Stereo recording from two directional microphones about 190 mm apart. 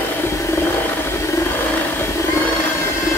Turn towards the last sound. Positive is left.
turn(degrees=15)  # may be behind; listen again after turning